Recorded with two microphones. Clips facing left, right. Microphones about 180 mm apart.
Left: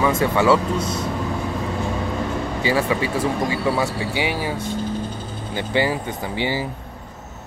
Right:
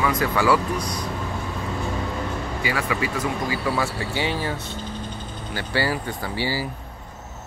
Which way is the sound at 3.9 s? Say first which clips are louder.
Left 2 dB; 15° left (ahead or behind).